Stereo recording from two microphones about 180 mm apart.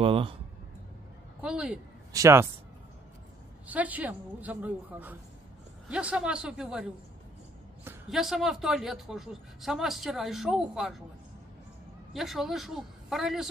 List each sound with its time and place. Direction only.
0.0 s speech: 30° right (ahead or behind)
1.4 s a woman's voice: 5° right (ahead or behind)
3.6 s a woman's voice: 10° right (ahead or behind)
8.1 s speech: centre (ahead or behind)
12.1 s speech: centre (ahead or behind)